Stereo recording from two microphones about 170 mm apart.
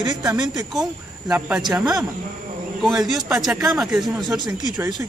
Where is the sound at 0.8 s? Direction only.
5° right (ahead or behind).